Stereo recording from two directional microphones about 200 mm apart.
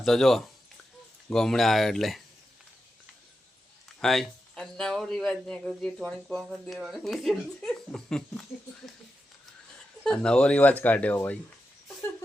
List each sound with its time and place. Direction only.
0.0 s speech: centre (ahead or behind)
4.0 s speech: centre (ahead or behind)
10.0 s speech: 5° left (ahead or behind)